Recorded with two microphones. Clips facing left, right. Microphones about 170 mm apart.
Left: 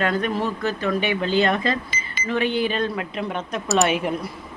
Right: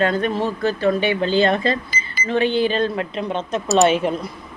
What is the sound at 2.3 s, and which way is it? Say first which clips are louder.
Speech: right 4 dB; 30° right (ahead or behind).